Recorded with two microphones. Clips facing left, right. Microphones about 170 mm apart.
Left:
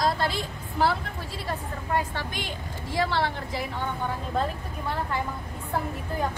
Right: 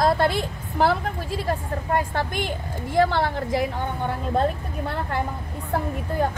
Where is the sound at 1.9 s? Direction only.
50° right (ahead or behind).